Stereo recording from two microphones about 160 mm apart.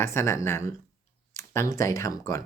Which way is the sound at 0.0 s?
15° left (ahead or behind).